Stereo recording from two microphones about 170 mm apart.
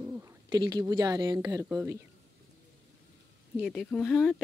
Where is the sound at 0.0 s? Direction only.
20° right (ahead or behind).